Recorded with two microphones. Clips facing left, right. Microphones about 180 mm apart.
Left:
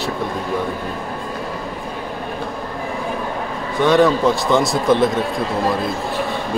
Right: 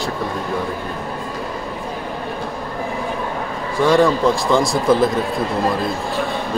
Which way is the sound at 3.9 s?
Centre (ahead or behind).